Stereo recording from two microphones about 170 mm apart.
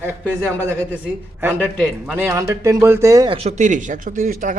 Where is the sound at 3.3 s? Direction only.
40° right (ahead or behind).